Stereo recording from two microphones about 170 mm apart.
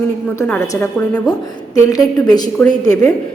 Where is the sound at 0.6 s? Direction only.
20° left (ahead or behind).